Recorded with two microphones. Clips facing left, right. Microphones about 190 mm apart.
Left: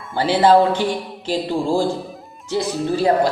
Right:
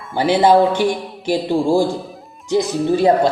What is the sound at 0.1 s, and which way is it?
Speech, 15° right (ahead or behind).